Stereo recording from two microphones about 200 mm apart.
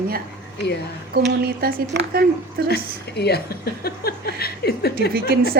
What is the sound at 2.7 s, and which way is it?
A woman's voice, 55° left (ahead or behind).